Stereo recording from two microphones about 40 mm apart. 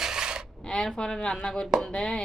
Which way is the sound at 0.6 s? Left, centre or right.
Centre.